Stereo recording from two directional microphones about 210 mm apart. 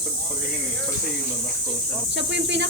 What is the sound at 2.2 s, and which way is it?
Speech, 55° right (ahead or behind).